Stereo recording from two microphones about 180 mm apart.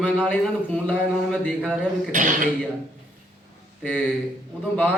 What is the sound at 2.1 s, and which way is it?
Speech, 45° right (ahead or behind).